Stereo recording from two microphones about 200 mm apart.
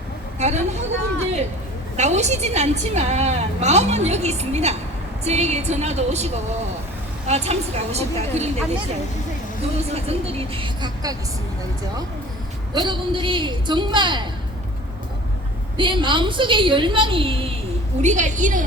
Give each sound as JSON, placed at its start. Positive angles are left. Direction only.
{"t": 0.3, "sound": "a sound", "side_deg": -35}
{"t": 2.0, "sound": "a woman's voice", "side_deg": -35}
{"t": 9.9, "sound": "a woman's voice", "side_deg": -30}
{"t": 12.7, "sound": "a woman's voice", "side_deg": -20}
{"t": 15.8, "sound": "a woman's voice", "side_deg": -25}
{"t": 18.0, "sound": "a woman's voice", "side_deg": -35}